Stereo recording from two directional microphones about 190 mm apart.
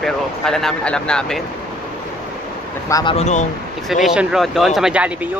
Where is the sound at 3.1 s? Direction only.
40° left (ahead or behind).